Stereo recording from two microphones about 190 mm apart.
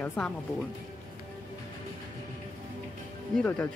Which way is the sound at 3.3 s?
10° left (ahead or behind).